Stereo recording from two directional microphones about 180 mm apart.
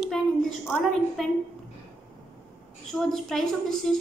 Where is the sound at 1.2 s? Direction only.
Centre (ahead or behind).